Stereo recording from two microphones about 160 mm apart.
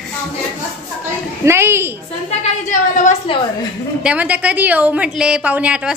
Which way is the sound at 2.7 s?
50° left (ahead or behind).